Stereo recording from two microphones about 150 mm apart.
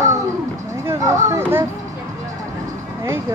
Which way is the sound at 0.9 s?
20° right (ahead or behind).